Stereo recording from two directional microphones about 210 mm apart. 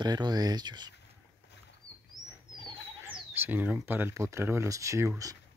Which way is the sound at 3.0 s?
10° right (ahead or behind).